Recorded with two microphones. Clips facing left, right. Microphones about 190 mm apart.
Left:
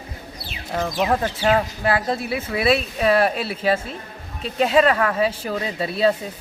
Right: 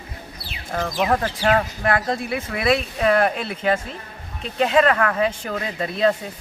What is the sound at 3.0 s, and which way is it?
Speech, 5° left (ahead or behind).